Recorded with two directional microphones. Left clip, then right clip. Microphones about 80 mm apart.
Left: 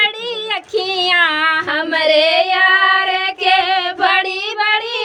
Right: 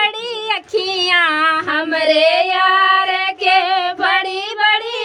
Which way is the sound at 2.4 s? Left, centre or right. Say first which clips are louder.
Left 1 dB; left.